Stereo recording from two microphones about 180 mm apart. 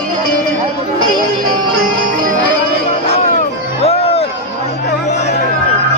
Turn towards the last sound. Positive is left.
turn(degrees=35)  # may be behind; listen again after turning